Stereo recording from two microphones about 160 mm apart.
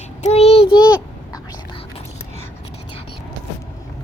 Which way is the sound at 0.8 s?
25° left (ahead or behind).